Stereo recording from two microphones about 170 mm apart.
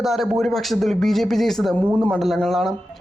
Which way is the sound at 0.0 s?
Centre (ahead or behind).